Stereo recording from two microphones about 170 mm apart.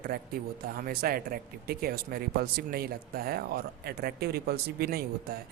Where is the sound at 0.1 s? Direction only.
60° right (ahead or behind).